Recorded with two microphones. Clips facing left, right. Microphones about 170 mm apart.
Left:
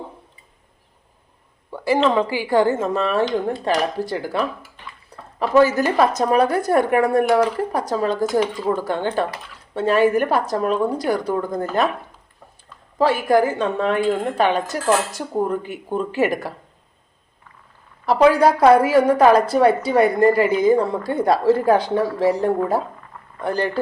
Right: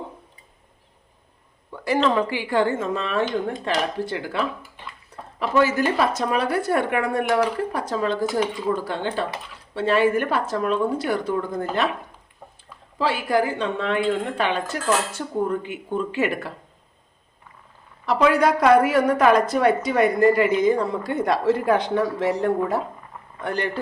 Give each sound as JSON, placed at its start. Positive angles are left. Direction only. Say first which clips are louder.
{"t": 1.7, "sound": "a sound", "louder": "left 4 dB", "side_deg": 30}
{"t": 2.0, "sound": "a woman's voice", "louder": "left 3 dB", "side_deg": 25}
{"t": 2.5, "sound": "a woman's voice", "louder": "left 5 dB", "side_deg": 40}
{"t": 13.0, "sound": "a woman's voice", "louder": "left 5 dB", "side_deg": 45}
{"t": 18.0, "sound": "a woman's voice", "louder": "left 4 dB", "side_deg": 35}